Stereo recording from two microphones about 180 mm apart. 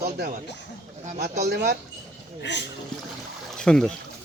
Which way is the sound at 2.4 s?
75° left (ahead or behind).